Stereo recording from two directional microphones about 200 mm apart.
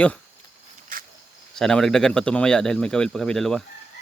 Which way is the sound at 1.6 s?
Centre (ahead or behind).